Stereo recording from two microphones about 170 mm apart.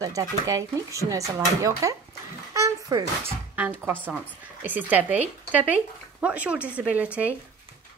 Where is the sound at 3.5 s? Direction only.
10° right (ahead or behind).